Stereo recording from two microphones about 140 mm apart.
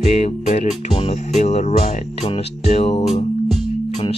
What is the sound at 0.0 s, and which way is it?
Music, 55° left (ahead or behind).